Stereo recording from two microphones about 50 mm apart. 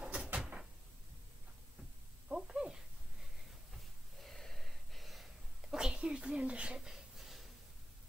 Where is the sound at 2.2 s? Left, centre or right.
Centre.